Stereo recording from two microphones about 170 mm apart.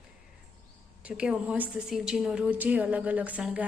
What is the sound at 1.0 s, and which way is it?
A woman's voice, 5° right (ahead or behind).